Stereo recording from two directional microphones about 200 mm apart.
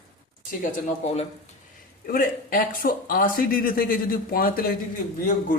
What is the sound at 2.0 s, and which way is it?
A man's voice, 45° left (ahead or behind).